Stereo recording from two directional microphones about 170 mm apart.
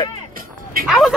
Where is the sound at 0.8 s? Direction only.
Centre (ahead or behind).